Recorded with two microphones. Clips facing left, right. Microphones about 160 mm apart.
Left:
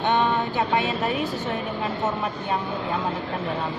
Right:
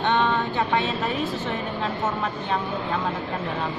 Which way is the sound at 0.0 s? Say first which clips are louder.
Even; 15° left (ahead or behind).